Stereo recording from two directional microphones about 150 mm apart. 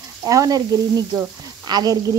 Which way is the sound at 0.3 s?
25° right (ahead or behind).